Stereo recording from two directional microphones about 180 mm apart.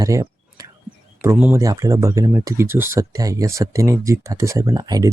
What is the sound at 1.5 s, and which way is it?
Speech, 20° right (ahead or behind).